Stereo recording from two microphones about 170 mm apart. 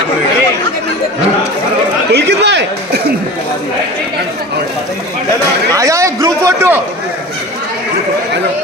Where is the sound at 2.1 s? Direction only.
80° right.